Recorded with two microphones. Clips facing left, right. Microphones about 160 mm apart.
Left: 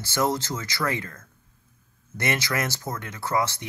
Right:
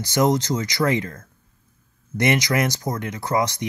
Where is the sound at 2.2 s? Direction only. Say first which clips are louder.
Right 7 dB; 15° right (ahead or behind).